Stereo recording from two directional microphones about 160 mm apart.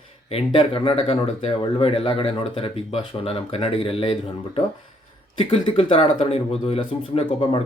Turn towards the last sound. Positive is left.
turn(degrees=35)  # may be behind; listen again after turning